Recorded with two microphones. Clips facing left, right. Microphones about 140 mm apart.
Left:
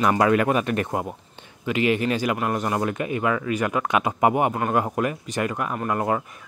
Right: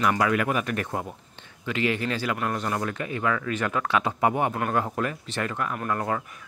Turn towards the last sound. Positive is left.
turn(degrees=15)  # may be behind; listen again after turning